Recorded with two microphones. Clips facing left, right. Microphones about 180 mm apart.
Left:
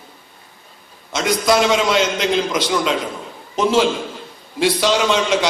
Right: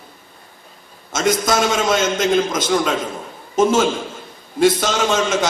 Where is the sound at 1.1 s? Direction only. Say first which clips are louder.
Left 1 dB; 45° right (ahead or behind).